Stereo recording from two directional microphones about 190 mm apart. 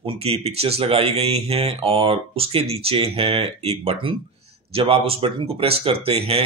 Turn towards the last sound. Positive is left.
turn(degrees=-30)  # may be behind; listen again after turning